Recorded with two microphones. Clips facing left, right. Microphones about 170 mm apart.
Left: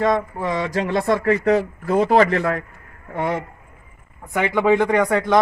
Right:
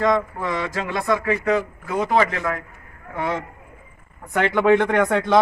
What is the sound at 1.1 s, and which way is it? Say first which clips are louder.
Speech: left 2 dB; 35° left (ahead or behind).